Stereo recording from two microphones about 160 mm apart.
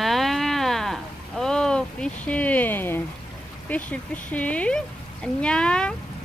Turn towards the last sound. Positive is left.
turn(degrees=5)  # may be behind; listen again after turning